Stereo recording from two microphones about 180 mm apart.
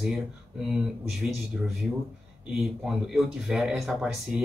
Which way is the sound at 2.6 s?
5° right (ahead or behind).